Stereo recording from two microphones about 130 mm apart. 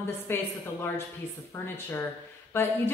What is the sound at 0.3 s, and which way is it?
Speech, 15° left (ahead or behind).